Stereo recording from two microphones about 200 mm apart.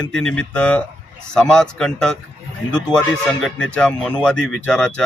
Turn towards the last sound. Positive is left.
turn(degrees=5)  # may be behind; listen again after turning